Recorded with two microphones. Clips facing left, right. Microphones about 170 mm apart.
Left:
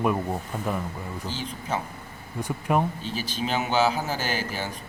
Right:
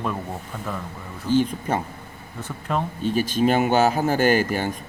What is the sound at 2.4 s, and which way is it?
Speech, 15° left (ahead or behind).